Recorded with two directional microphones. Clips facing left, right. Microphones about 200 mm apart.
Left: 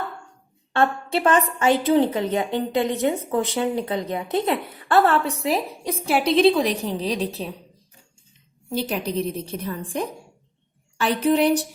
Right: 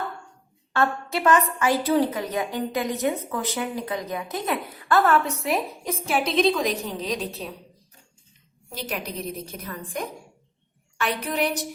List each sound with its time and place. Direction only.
0.7 s a woman's voice: 30° left (ahead or behind)
8.7 s a woman's voice: 30° left (ahead or behind)